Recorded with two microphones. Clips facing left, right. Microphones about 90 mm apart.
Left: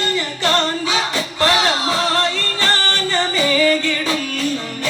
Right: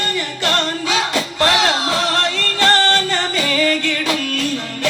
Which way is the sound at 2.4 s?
70° right (ahead or behind).